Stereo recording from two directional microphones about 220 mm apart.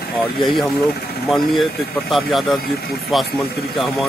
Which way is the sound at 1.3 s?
Centre (ahead or behind).